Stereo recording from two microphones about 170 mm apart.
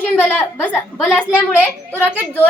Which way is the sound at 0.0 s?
10° left (ahead or behind).